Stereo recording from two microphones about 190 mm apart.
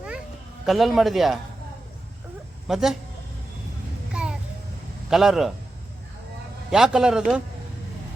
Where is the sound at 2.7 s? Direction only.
Centre (ahead or behind).